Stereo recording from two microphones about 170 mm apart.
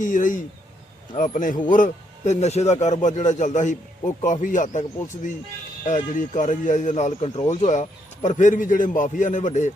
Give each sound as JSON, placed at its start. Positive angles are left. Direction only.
{"t": 0.0, "sound": "a man's voice", "side_deg": 50}